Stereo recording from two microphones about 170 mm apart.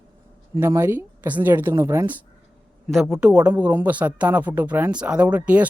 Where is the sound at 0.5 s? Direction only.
15° right (ahead or behind).